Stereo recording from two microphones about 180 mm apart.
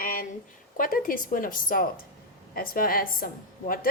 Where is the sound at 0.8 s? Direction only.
50° left (ahead or behind).